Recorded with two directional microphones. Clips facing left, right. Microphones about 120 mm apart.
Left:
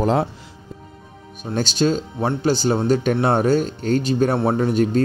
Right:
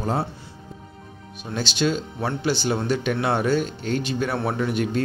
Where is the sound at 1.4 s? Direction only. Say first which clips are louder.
Left 4 dB; 45° left (ahead or behind).